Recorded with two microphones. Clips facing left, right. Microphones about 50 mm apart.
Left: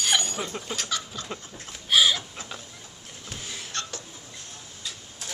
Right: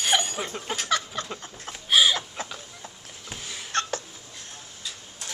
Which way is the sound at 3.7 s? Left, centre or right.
Right.